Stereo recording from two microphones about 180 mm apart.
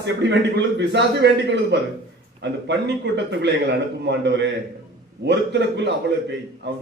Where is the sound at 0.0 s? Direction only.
75° right (ahead or behind).